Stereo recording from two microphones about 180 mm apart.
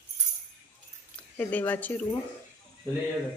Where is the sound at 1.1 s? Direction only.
10° left (ahead or behind).